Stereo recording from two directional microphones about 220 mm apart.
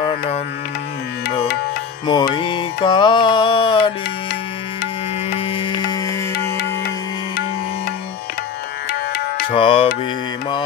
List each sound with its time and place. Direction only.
2.0 s music: 20° left (ahead or behind)
5.5 s music: 25° left (ahead or behind)
6.3 s music: 45° left (ahead or behind)
9.5 s music: 25° left (ahead or behind)